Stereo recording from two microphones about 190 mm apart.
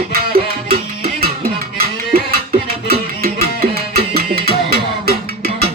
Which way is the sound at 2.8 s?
50° right (ahead or behind).